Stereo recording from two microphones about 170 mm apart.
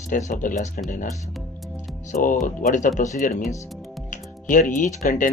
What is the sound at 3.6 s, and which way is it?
Music, centre (ahead or behind).